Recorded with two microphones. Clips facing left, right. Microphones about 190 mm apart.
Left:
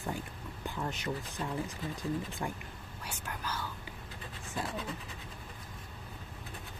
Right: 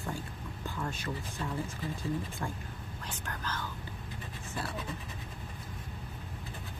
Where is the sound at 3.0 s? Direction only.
10° left (ahead or behind).